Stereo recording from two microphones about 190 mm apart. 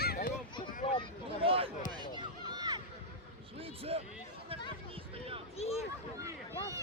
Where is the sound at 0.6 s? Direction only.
30° left (ahead or behind).